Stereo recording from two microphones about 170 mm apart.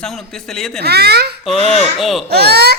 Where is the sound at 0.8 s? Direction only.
70° right (ahead or behind).